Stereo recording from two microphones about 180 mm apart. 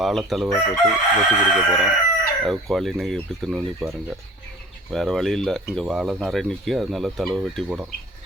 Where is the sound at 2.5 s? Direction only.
Centre (ahead or behind).